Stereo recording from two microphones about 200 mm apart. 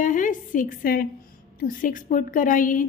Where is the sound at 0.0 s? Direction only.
40° left (ahead or behind).